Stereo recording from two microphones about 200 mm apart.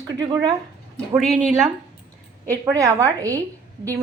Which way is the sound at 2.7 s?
15° right (ahead or behind).